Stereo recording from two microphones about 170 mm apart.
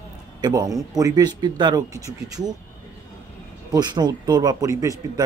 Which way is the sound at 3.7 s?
25° right (ahead or behind).